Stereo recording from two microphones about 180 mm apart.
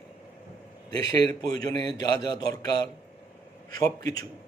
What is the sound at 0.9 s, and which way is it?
A man's voice, 20° left (ahead or behind).